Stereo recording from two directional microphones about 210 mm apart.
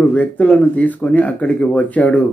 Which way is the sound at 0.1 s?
5° left (ahead or behind).